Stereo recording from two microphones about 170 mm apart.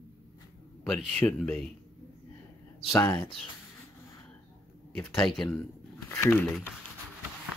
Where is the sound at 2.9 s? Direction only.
15° left (ahead or behind).